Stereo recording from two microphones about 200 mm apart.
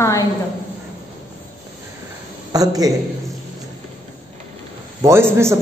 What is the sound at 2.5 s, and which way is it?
Speech, 20° right (ahead or behind).